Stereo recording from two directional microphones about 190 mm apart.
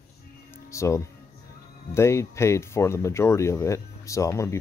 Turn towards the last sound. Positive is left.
turn(degrees=15)  # may be behind; listen again after turning